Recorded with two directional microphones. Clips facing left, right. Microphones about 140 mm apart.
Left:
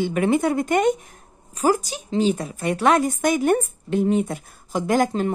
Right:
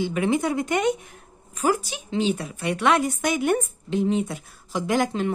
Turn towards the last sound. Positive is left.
turn(degrees=45)  # may be behind; listen again after turning